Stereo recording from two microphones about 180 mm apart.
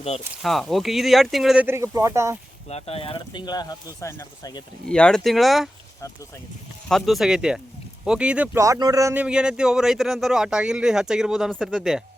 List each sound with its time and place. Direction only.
0.4 s speech: centre (ahead or behind)
1.6 s speech: 15° right (ahead or behind)
2.6 s speech: 35° left (ahead or behind); by 4.6 s 20° left (ahead or behind)
4.9 s speech: 5° left (ahead or behind)
6.8 s speech: centre (ahead or behind)
8.6 s speech: 20° right (ahead or behind); by 12.0 s centre (ahead or behind)